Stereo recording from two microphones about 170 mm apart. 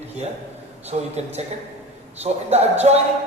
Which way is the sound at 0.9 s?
40° right (ahead or behind).